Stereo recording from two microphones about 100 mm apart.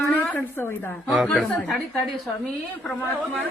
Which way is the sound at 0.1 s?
20° left (ahead or behind).